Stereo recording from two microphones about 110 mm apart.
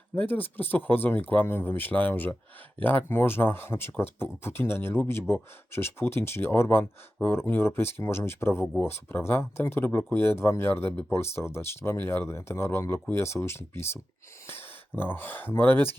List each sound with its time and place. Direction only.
0.2 s speech: 15° left (ahead or behind)